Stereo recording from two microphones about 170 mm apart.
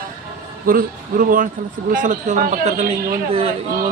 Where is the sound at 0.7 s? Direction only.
55° right (ahead or behind).